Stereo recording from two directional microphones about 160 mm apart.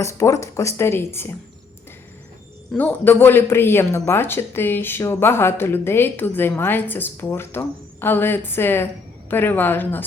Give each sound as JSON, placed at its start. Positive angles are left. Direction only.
{"t": 0.0, "sound": "speech", "side_deg": 20}
{"t": 2.7, "sound": "speech", "side_deg": 10}